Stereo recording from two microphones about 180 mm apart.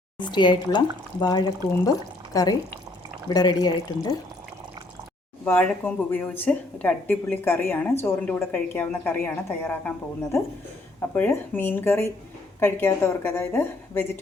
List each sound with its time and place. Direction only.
0.2 s speech: 25° left (ahead or behind)
5.5 s a woman's voice: 10° left (ahead or behind)
11.1 s a woman's voice: 10° left (ahead or behind)